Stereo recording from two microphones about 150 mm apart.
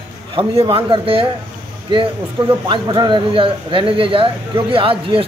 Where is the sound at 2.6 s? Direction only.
30° right (ahead or behind).